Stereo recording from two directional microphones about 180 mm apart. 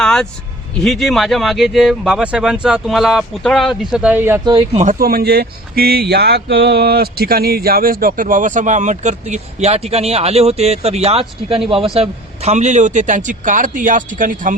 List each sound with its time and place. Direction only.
0.0 s a sound: 5° left (ahead or behind)
0.8 s speech: centre (ahead or behind)
4.4 s speech: 30° right (ahead or behind)
4.8 s speech: 50° right (ahead or behind)